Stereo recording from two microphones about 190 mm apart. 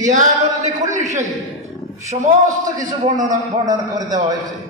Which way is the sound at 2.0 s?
35° right (ahead or behind).